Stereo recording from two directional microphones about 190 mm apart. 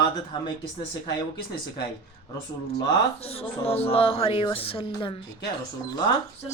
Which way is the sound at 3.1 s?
30° left (ahead or behind).